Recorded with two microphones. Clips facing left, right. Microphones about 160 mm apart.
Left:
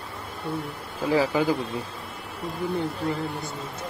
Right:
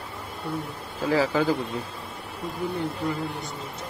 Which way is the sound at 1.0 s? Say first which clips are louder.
Even; 15° left (ahead or behind).